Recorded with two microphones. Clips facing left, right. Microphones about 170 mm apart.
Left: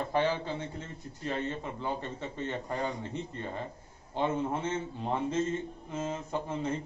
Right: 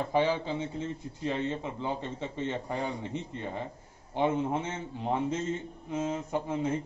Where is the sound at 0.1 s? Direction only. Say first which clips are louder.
Right 2 dB; 15° right (ahead or behind).